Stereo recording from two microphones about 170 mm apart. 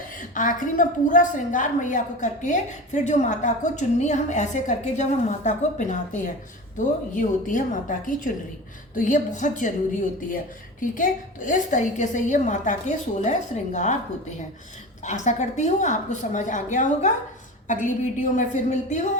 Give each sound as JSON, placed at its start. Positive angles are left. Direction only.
{"t": 0.2, "sound": "a woman's voice", "side_deg": 50}